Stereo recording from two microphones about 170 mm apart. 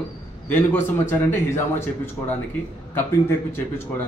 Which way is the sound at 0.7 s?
15° left (ahead or behind).